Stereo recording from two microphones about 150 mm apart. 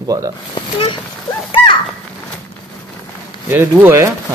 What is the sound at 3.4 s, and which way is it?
Speech, 15° right (ahead or behind).